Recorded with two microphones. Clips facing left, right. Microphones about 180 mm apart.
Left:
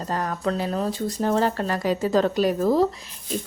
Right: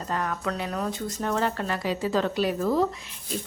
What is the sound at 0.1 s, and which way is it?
Speech, 35° left (ahead or behind).